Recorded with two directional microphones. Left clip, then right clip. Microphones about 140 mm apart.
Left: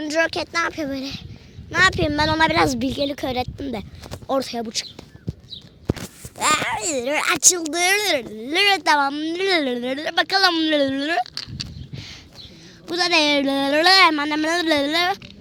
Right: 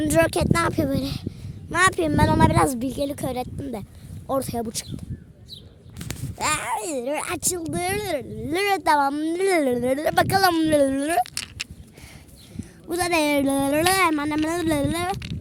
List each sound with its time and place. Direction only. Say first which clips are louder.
0.0 s speech: right 1 dB; 55° right (ahead or behind); by 2.4 s 20° right (ahead or behind)
2.4 s a woman's voice: left 2 dB; 10° right (ahead or behind)
4.3 s speech: left 3 dB; 20° right (ahead or behind)
4.5 s speech: left 2 dB; 30° right (ahead or behind)
6.6 s speech: left 3 dB; 20° right (ahead or behind)
6.9 s speech: left 6 dB; 10° right (ahead or behind)
8.4 s speech: left 3 dB; 25° right (ahead or behind); by 10.7 s 40° right (ahead or behind)
10.7 s speech: even; 30° right (ahead or behind)
12.9 s speech: left 4 dB; 25° right (ahead or behind)
14.3 s speech: left 4 dB; 5° left (ahead or behind)